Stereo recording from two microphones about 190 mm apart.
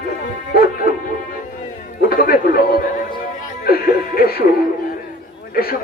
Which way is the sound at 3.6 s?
50° left (ahead or behind).